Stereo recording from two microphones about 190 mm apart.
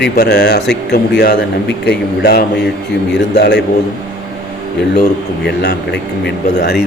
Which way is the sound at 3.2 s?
65° left (ahead or behind).